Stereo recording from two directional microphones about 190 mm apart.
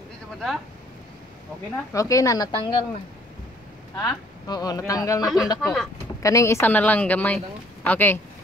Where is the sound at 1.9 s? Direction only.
15° left (ahead or behind).